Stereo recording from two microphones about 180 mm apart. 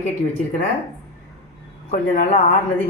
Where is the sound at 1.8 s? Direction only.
50° left (ahead or behind).